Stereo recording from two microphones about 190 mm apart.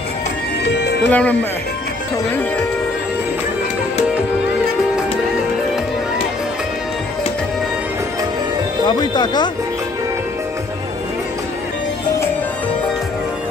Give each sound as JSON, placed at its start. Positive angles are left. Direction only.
{"t": 0.7, "sound": "music", "side_deg": 60}
{"t": 1.0, "sound": "speech", "side_deg": 10}
{"t": 8.8, "sound": "speech", "side_deg": 20}